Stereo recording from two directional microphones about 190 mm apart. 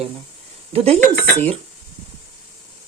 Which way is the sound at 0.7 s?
30° right (ahead or behind).